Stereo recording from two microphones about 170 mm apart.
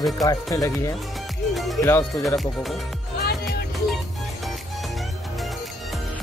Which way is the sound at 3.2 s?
70° left (ahead or behind).